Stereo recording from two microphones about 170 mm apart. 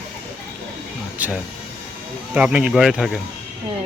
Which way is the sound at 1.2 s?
10° right (ahead or behind).